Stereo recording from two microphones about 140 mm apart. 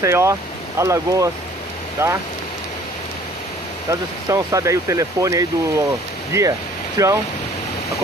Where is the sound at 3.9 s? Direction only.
20° right (ahead or behind).